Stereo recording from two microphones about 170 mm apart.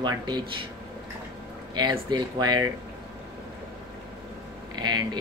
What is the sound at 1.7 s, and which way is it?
Speech, 25° right (ahead or behind).